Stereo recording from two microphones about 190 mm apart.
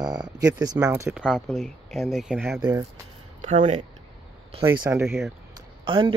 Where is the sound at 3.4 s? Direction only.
40° right (ahead or behind).